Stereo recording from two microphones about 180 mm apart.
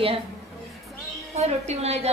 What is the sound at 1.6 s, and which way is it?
Speech, 35° right (ahead or behind).